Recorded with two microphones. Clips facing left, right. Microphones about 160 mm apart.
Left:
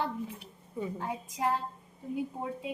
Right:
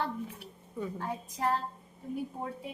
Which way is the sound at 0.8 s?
15° left (ahead or behind).